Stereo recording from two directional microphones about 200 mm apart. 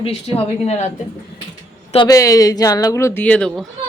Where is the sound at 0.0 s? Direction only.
30° left (ahead or behind).